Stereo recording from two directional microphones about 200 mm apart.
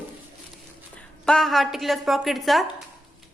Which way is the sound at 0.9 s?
5° left (ahead or behind).